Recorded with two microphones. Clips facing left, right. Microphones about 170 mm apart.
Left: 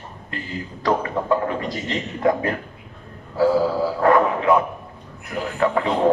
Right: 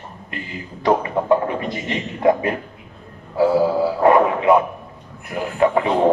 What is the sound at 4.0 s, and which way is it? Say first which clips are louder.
Music: right 2 dB; 20° right (ahead or behind).